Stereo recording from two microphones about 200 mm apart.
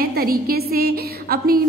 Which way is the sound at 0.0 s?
50° right (ahead or behind).